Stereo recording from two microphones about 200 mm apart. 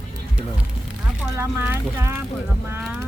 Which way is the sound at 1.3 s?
10° right (ahead or behind).